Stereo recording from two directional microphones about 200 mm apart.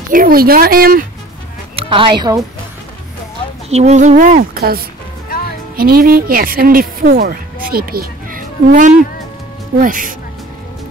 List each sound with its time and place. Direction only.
0.1 s speech: 45° right (ahead or behind)
1.9 s a woman's voice: 25° right (ahead or behind)
3.7 s a woman's voice: 35° right (ahead or behind)